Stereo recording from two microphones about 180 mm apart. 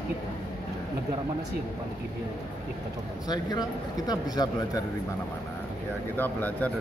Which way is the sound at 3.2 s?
20° left (ahead or behind).